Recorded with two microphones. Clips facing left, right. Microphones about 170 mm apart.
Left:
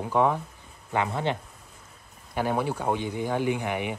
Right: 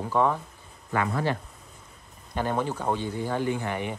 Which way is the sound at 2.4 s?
10° left (ahead or behind).